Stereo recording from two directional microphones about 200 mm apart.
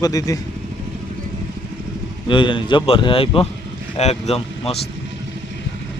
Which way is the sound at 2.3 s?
25° left (ahead or behind).